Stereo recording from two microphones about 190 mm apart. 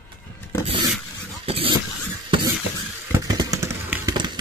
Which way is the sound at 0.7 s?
25° right (ahead or behind).